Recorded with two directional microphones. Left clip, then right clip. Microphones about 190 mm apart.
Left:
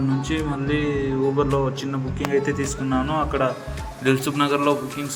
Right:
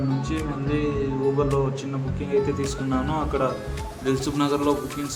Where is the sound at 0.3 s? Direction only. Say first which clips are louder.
Left 2 dB; 10° left (ahead or behind).